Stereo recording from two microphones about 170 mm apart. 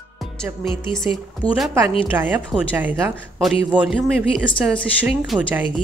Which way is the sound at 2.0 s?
10° right (ahead or behind).